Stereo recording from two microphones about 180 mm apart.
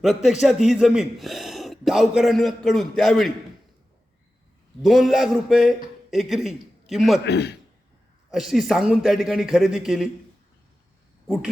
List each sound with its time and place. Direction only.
0.0 s a man's voice: centre (ahead or behind)
4.8 s a man's voice: centre (ahead or behind)
7.3 s a man's voice: 65° left (ahead or behind)
8.3 s a man's voice: centre (ahead or behind)